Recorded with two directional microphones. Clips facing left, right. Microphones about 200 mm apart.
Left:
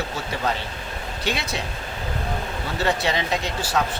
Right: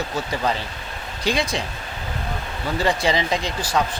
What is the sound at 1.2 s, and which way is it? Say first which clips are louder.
Speech: right 5 dB; 5° left (ahead or behind).